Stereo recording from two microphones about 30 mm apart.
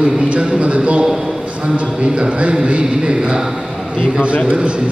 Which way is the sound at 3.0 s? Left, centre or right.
Right.